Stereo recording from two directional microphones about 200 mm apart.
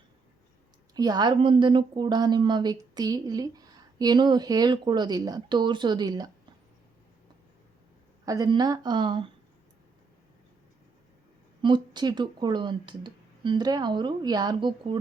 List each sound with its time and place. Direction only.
0.9 s speech: 20° right (ahead or behind)
8.2 s speech: 20° right (ahead or behind)
11.6 s speech: 20° right (ahead or behind)